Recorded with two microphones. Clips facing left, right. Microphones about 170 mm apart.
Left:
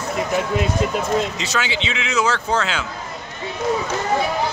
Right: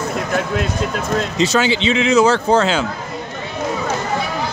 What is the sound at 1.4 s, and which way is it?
Speech, 30° right (ahead or behind).